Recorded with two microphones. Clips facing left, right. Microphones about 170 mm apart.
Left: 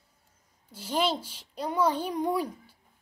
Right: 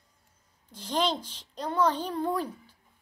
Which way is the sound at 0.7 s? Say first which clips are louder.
Even; 10° left (ahead or behind).